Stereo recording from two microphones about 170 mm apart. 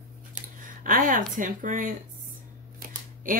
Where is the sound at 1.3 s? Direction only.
50° right (ahead or behind).